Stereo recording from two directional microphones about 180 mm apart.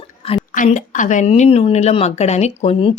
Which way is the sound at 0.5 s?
45° left (ahead or behind).